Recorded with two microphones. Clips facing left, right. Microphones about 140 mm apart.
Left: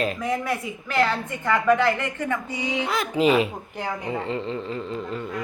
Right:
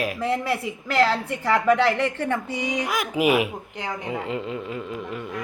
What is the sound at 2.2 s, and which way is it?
Music, 30° right (ahead or behind).